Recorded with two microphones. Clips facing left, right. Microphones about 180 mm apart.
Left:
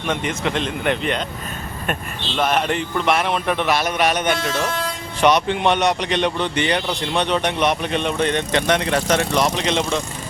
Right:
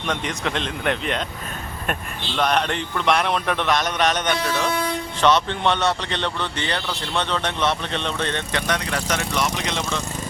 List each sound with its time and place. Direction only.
0.1 s a man's voice: 5° left (ahead or behind)
2.4 s a man's voice: 5° left (ahead or behind); by 9.5 s 30° left (ahead or behind)
9.6 s speech: 20° left (ahead or behind)